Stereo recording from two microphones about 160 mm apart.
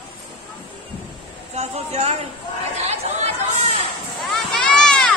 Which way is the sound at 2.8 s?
40° right (ahead or behind).